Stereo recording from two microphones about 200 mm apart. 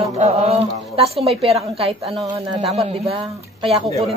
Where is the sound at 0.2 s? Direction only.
30° right (ahead or behind).